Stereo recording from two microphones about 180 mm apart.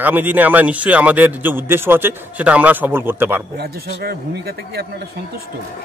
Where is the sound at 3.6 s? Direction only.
60° right (ahead or behind).